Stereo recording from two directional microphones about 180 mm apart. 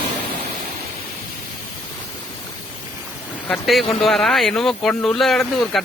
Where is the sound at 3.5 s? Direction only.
Centre (ahead or behind).